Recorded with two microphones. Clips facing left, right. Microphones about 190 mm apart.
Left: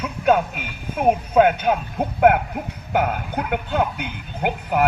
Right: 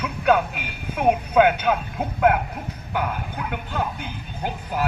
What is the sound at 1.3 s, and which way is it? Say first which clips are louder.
Speech: left 2 dB; 40° left (ahead or behind).